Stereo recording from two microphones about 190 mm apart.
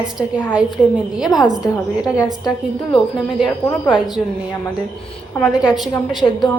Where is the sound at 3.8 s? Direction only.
5° right (ahead or behind).